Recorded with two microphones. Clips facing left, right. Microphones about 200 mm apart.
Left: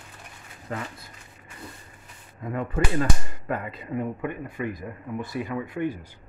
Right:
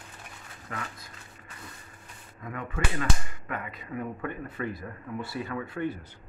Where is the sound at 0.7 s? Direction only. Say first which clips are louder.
Left 5 dB; 30° left (ahead or behind).